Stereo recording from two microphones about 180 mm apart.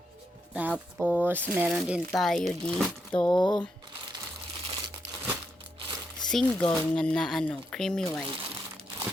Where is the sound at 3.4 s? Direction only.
25° left (ahead or behind).